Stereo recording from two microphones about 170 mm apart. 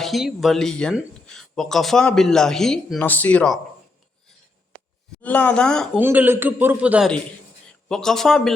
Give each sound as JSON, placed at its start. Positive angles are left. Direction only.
{"t": 0.0, "sound": "speech", "side_deg": 0}
{"t": 5.2, "sound": "speech", "side_deg": 10}
{"t": 6.0, "sound": "a man's voice", "side_deg": -10}
{"t": 7.9, "sound": "speech", "side_deg": 5}